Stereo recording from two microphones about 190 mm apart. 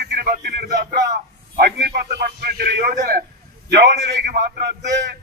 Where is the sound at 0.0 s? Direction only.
55° right (ahead or behind).